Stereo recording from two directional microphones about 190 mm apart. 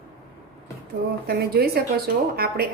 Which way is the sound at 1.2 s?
55° right (ahead or behind).